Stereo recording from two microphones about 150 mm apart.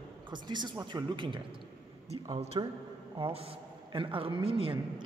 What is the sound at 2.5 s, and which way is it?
A man's voice, 30° right (ahead or behind).